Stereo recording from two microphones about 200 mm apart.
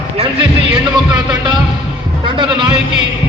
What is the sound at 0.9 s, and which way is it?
Music, 20° right (ahead or behind).